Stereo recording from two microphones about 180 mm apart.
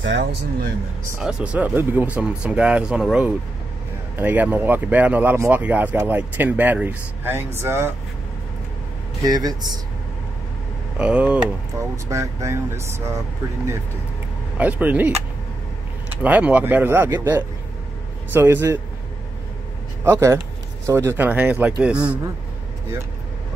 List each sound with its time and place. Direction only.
0.0 s speech: 75° right (ahead or behind)
1.2 s speech: 5° right (ahead or behind)
9.2 s speech: 20° right (ahead or behind)
11.0 s speech: 5° right (ahead or behind)
14.6 s speech: 10° right (ahead or behind)
20.1 s speech: 15° right (ahead or behind)